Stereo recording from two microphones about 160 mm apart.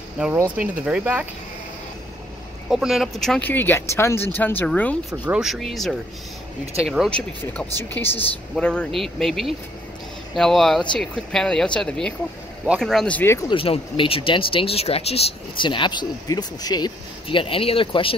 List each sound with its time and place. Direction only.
0.2 s speech: 10° right (ahead or behind)
2.7 s speech: centre (ahead or behind)
5.2 s speech: 5° right (ahead or behind)
7.9 s speech: 15° left (ahead or behind)
13.5 s speech: 35° left (ahead or behind)